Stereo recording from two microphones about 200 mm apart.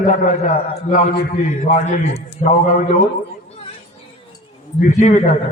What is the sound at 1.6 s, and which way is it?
A man's voice, 40° left (ahead or behind).